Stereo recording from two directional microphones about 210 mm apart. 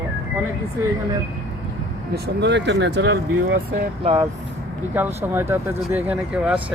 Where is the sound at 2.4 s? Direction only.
55° right (ahead or behind).